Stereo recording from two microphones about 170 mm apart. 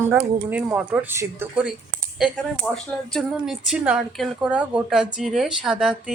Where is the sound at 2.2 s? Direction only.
5° left (ahead or behind).